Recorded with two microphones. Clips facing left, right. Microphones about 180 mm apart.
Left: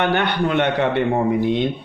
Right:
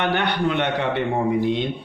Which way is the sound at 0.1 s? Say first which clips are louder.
Left 2 dB; 55° left (ahead or behind).